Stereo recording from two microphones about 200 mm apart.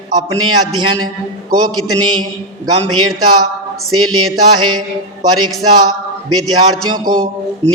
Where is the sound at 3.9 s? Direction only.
90° right.